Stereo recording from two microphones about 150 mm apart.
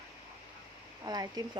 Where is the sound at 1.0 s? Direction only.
25° right (ahead or behind).